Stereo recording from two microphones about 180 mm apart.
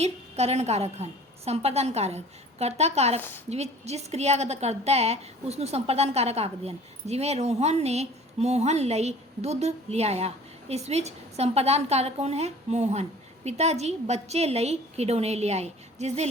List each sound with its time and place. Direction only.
0.0 s a woman's voice: 35° right (ahead or behind)
3.2 s a woman's voice: 10° left (ahead or behind)
3.5 s a woman's voice: 35° right (ahead or behind)